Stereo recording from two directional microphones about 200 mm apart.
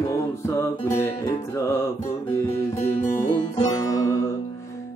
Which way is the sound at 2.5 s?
30° left (ahead or behind).